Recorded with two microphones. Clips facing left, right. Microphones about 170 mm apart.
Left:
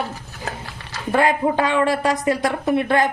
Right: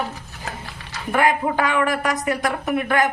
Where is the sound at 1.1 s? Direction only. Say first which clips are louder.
Left 2 dB; 25° left (ahead or behind).